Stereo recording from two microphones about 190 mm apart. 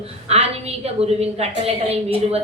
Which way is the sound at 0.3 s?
35° right (ahead or behind).